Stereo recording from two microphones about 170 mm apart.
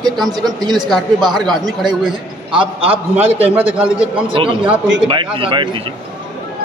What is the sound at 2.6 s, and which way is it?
Speech, 35° right (ahead or behind).